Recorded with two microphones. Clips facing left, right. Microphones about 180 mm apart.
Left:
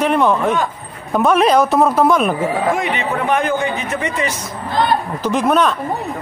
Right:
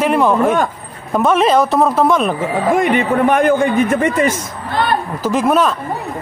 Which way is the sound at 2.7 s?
50° right (ahead or behind).